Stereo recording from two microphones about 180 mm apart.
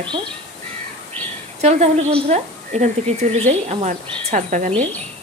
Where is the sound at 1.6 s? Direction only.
35° right (ahead or behind).